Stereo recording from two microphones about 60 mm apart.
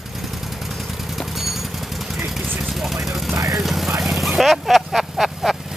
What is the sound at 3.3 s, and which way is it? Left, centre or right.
Vehicle, right.